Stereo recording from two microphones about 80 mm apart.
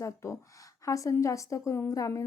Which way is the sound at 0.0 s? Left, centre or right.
Left.